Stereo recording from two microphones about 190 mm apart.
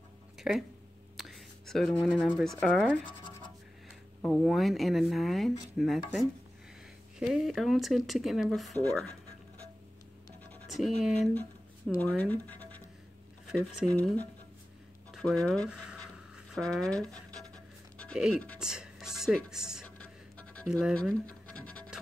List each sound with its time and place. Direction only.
0.4 s speech: centre (ahead or behind)
1.1 s whispering: centre (ahead or behind)
2.2 s speech: centre (ahead or behind)
3.1 s scratch: 25° left (ahead or behind)
4.2 s speech: 5° left (ahead or behind)
11.0 s speech: centre (ahead or behind)
13.8 s speech: 5° left (ahead or behind)
20.8 s scratch: 5° left (ahead or behind)